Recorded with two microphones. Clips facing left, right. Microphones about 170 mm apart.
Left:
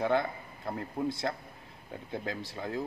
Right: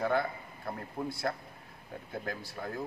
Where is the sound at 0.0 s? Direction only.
20° left (ahead or behind).